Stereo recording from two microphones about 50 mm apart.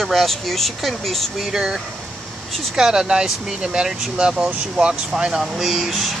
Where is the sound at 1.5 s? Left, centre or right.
Centre.